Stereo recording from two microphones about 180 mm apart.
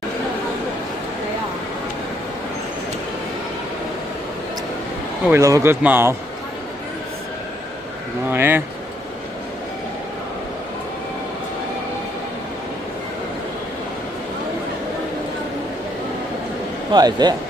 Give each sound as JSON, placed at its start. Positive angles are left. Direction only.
{"t": 5.3, "sound": "speech", "side_deg": -15}
{"t": 8.3, "sound": "speech", "side_deg": -10}
{"t": 16.9, "sound": "speech", "side_deg": -20}